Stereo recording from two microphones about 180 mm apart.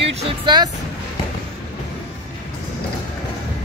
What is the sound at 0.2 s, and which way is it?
Speech, 25° right (ahead or behind).